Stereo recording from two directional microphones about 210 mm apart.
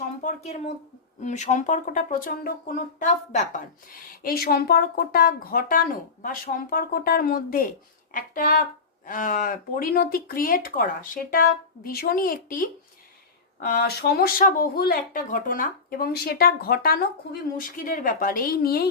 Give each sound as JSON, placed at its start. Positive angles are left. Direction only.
{"t": 0.2, "sound": "speech", "side_deg": 35}